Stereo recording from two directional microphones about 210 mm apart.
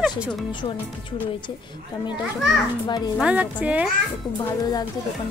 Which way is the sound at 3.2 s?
5° right (ahead or behind).